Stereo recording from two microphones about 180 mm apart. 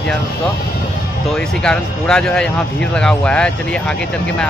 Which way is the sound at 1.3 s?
5° left (ahead or behind).